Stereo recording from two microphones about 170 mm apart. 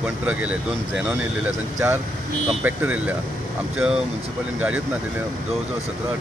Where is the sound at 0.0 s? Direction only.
10° right (ahead or behind).